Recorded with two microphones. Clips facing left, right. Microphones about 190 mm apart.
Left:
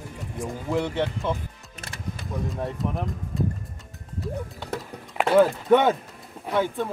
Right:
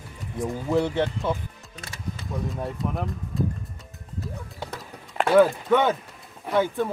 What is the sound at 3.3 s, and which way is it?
Music, centre (ahead or behind).